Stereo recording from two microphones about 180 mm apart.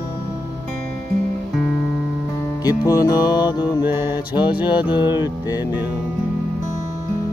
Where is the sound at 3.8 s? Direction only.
10° right (ahead or behind).